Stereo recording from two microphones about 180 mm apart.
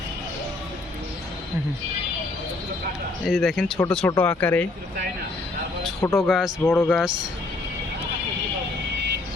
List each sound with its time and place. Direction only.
3.2 s speech: centre (ahead or behind)
6.0 s speech: 15° left (ahead or behind)
6.2 s speech: centre (ahead or behind)
6.7 s speech: 10° left (ahead or behind)
6.9 s speech: 5° right (ahead or behind)